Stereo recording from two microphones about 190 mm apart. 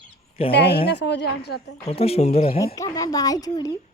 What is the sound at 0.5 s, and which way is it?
A woman's voice, 60° left (ahead or behind).